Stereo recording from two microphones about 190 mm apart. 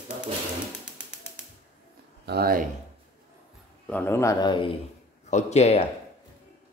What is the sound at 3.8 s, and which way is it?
Speech, 10° left (ahead or behind).